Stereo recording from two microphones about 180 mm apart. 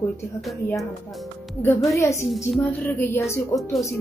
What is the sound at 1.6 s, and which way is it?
Speech, 10° left (ahead or behind).